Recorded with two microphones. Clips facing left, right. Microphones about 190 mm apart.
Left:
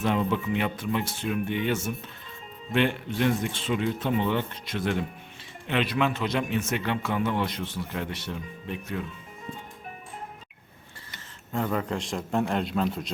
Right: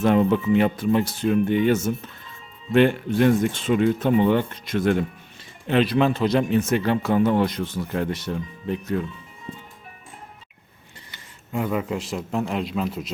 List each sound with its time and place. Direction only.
0.0 s speech: 45° right (ahead or behind)
11.5 s a man's voice: 10° right (ahead or behind)